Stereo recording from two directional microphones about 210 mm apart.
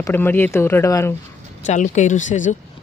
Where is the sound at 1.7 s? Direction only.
35° left (ahead or behind).